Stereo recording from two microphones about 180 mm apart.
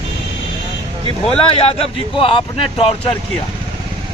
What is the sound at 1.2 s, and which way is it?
Speech, 30° left (ahead or behind).